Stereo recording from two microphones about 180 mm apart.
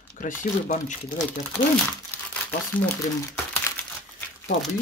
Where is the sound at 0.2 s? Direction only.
45° left (ahead or behind).